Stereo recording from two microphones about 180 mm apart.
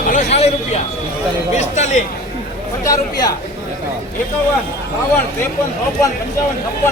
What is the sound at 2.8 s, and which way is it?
Speech, 20° left (ahead or behind).